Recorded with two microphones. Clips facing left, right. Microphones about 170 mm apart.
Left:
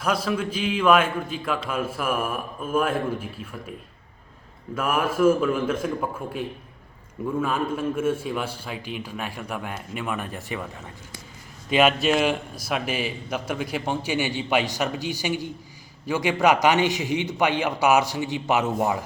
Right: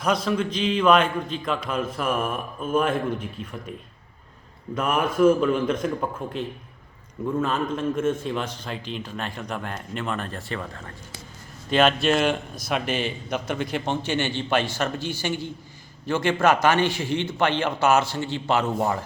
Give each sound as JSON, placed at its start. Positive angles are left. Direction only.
{"t": 0.0, "sound": "a man's voice", "side_deg": 5}
{"t": 4.7, "sound": "a man's voice", "side_deg": 5}
{"t": 7.4, "sound": "a man's voice", "side_deg": 10}